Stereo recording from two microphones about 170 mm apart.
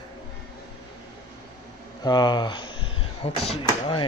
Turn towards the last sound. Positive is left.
turn(degrees=30)  # may be behind; listen again after turning